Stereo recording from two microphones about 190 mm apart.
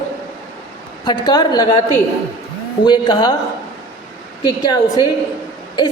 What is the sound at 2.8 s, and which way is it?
Speech, 25° left (ahead or behind).